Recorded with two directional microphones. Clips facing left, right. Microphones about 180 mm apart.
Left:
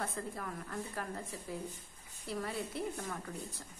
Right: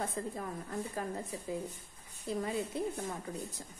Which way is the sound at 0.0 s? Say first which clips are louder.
Right 3 dB; 20° right (ahead or behind).